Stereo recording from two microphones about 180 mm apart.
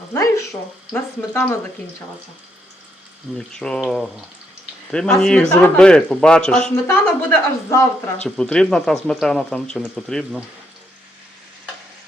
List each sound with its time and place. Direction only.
0.1 s speech: 15° left (ahead or behind)
3.3 s speech: 5° left (ahead or behind)